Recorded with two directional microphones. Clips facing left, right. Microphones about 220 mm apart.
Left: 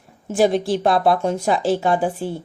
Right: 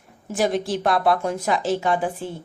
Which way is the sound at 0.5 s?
Centre (ahead or behind).